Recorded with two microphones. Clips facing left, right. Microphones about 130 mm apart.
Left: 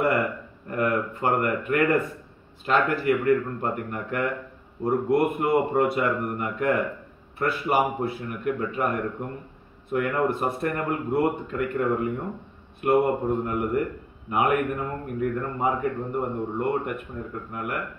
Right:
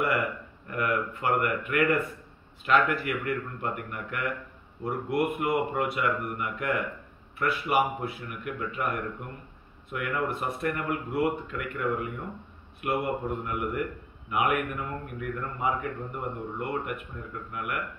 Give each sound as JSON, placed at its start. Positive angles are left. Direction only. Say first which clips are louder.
{"t": 0.7, "sound": "a man's voice", "louder": "left 4 dB", "side_deg": 35}